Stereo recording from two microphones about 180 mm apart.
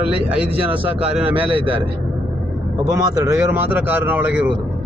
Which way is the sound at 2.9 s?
20° right (ahead or behind).